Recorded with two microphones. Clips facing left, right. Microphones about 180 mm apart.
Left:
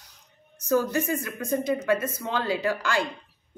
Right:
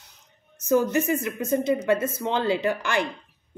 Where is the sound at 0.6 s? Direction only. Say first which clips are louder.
Right 3 dB; 20° right (ahead or behind).